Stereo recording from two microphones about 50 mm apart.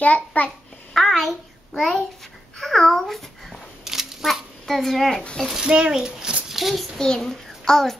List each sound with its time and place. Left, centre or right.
0.0 s a child's voice: left
0.9 s a sound: centre
1.7 s a child's voice: centre
3.8 s a sound: centre
5.6 s a child's voice: centre
6.5 s a child's voice: centre
7.0 s a child's voice: centre